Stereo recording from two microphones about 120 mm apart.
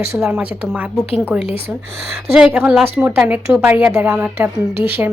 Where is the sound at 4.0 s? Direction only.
15° right (ahead or behind).